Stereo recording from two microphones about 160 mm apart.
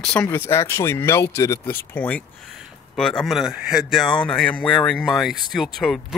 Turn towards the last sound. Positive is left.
turn(degrees=0)  # may be behind; listen again after turning